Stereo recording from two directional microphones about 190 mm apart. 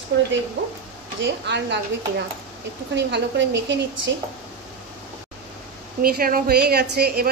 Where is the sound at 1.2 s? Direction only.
65° right (ahead or behind).